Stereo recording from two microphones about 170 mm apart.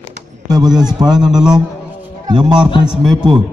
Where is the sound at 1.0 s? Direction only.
20° right (ahead or behind).